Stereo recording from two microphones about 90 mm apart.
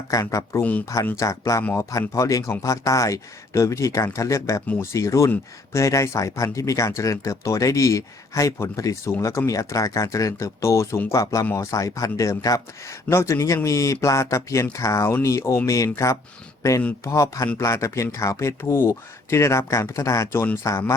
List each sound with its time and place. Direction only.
0.1 s speech: 40° left (ahead or behind)
17.0 s speech: 35° left (ahead or behind)